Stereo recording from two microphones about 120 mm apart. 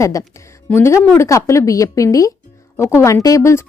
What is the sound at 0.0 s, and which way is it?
Speech, 25° left (ahead or behind).